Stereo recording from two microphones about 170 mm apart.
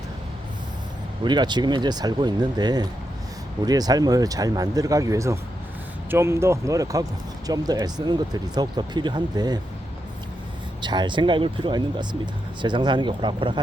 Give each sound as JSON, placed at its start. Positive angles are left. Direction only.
{"t": 1.2, "sound": "speech", "side_deg": -25}
{"t": 10.8, "sound": "speech", "side_deg": -25}